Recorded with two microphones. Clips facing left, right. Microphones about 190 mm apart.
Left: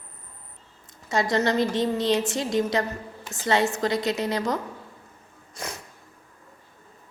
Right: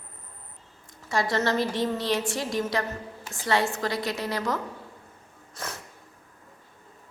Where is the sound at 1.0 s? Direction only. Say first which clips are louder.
Left 2 dB; 20° left (ahead or behind).